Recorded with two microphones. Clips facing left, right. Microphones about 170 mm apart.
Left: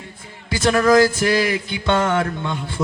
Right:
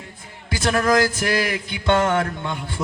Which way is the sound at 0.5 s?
25° left (ahead or behind).